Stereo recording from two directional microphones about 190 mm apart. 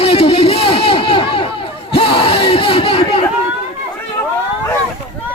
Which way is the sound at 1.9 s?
30° left (ahead or behind).